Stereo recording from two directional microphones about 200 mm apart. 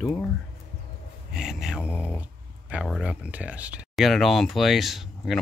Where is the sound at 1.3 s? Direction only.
5° right (ahead or behind).